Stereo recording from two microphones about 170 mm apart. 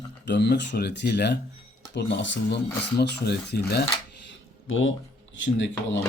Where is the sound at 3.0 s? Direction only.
70° left (ahead or behind).